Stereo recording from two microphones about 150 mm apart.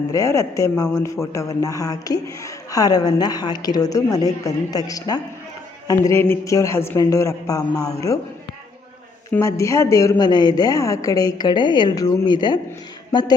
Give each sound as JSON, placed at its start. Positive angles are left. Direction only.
{"t": 0.1, "sound": "speech", "side_deg": 20}
{"t": 9.3, "sound": "speech", "side_deg": 20}